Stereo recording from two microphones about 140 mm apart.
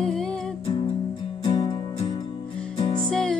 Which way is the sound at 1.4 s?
35° left (ahead or behind).